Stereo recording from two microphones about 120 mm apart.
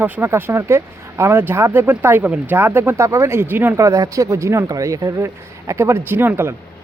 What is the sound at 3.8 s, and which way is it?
Speech, 30° right (ahead or behind).